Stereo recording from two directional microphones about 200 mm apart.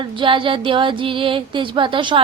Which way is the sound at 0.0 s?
25° right (ahead or behind).